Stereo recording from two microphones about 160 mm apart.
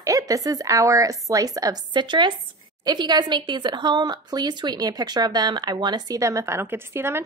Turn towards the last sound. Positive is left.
turn(degrees=-15)  # may be behind; listen again after turning